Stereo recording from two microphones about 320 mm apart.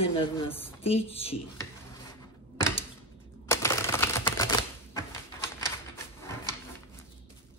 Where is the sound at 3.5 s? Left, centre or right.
Centre.